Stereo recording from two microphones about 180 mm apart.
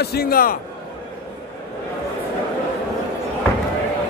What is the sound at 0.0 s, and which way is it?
Speech, 60° left (ahead or behind).